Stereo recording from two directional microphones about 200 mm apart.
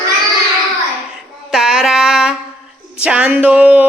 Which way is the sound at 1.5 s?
Centre (ahead or behind).